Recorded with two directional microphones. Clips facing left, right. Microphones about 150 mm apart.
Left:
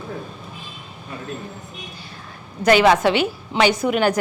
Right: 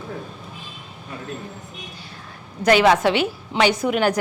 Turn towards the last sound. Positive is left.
turn(degrees=10)  # may be behind; listen again after turning